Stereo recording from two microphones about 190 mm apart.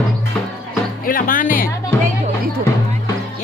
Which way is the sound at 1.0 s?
45° left (ahead or behind).